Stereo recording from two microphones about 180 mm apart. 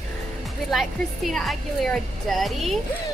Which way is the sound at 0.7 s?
Centre (ahead or behind).